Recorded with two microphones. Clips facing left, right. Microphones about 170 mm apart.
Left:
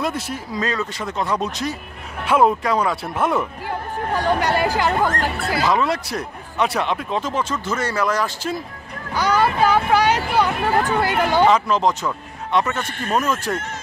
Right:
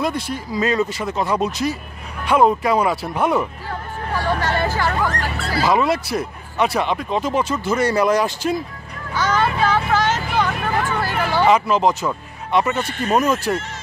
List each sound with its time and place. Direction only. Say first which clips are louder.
0.0 s speech: right 2 dB; centre (ahead or behind)
0.6 s speech: right 5 dB; 10° right (ahead or behind)
3.6 s speech: left 3 dB; 15° left (ahead or behind)
4.9 s speech: left 2 dB; 50° left (ahead or behind)
5.7 s speech: right 4 dB; 5° right (ahead or behind)
7.2 s speech: right 3 dB; 10° right (ahead or behind)
9.1 s vehicle: left 1 dB; 10° left (ahead or behind)
10.7 s speech: left 3 dB; 40° left (ahead or behind)
11.4 s speech: right 4 dB; 10° right (ahead or behind)
12.8 s speech: right 4 dB; 50° left (ahead or behind)
13.1 s speech: right 3 dB; 15° right (ahead or behind)